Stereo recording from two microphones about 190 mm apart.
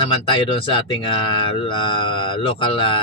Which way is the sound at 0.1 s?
25° left (ahead or behind).